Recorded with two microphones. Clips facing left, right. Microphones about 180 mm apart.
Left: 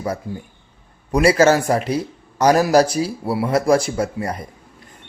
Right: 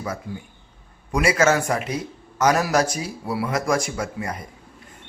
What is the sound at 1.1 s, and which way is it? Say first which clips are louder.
A man's voice: left 5 dB; 35° left (ahead or behind).